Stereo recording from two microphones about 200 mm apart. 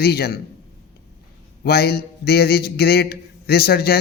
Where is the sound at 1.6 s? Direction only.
50° left (ahead or behind).